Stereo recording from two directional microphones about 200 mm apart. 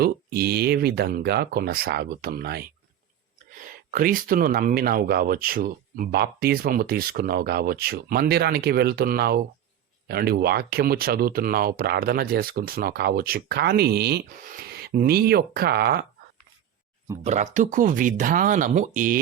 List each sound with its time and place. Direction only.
0.0 s speech: 50° right (ahead or behind)
17.2 s speech: 35° right (ahead or behind)